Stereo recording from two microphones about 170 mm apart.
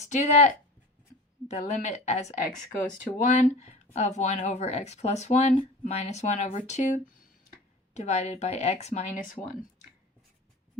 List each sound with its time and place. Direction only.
0.0 s speech: 45° left (ahead or behind)